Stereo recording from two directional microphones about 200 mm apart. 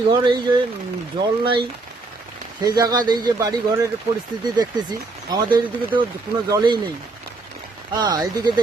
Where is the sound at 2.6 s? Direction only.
20° right (ahead or behind).